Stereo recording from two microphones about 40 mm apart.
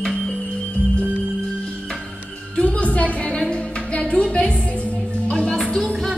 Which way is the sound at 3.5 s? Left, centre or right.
Left.